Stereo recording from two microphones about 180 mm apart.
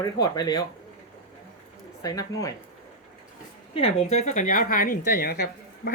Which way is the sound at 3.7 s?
35° left (ahead or behind).